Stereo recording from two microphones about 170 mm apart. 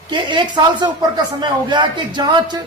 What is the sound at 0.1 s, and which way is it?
Speech, 25° right (ahead or behind).